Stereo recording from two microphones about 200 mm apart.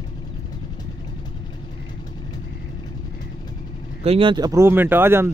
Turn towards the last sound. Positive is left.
turn(degrees=-10)  # may be behind; listen again after turning